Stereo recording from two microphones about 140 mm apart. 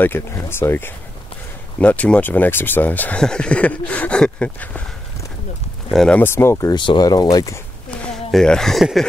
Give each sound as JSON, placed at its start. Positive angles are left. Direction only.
{"t": 0.0, "sound": "speech", "side_deg": 15}
{"t": 5.9, "sound": "speech", "side_deg": 0}
{"t": 6.1, "sound": "speech", "side_deg": 15}
{"t": 6.7, "sound": "speech", "side_deg": 35}
{"t": 8.0, "sound": "speech", "side_deg": 5}